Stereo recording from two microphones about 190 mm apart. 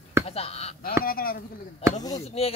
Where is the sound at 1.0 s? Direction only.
50° left (ahead or behind).